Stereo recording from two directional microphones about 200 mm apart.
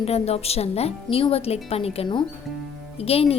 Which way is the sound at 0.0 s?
30° left (ahead or behind).